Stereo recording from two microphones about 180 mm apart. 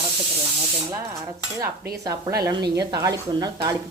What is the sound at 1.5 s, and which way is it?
Cutlery, 15° right (ahead or behind).